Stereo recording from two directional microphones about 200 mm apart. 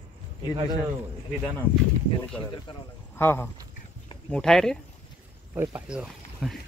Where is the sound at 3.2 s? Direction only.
10° left (ahead or behind).